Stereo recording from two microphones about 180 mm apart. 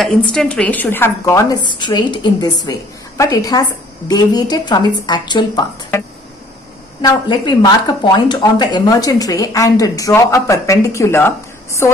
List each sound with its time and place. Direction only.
0.0 s a woman's voice: 5° left (ahead or behind)